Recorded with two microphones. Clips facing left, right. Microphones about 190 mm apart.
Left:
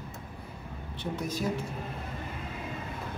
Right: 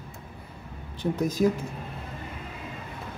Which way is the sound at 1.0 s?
40° right (ahead or behind).